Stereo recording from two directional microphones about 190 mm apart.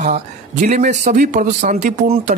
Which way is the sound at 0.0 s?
40° right (ahead or behind).